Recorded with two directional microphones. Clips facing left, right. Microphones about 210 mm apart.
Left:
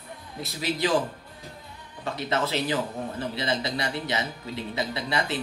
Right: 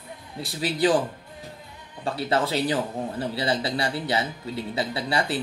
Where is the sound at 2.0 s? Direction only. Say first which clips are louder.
Right 3 dB; 30° right (ahead or behind).